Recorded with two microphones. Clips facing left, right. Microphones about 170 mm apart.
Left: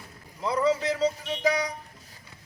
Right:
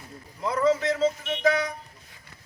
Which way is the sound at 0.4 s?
10° left (ahead or behind).